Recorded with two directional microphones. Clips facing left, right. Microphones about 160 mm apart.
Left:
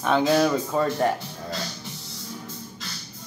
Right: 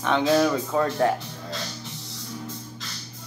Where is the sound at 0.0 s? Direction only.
5° left (ahead or behind).